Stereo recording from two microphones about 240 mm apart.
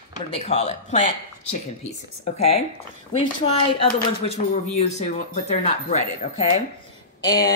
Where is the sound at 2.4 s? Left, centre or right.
Left.